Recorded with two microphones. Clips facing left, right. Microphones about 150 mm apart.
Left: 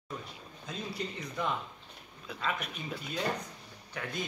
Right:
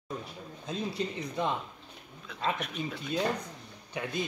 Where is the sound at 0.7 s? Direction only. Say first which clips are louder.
Right 5 dB; 25° right (ahead or behind).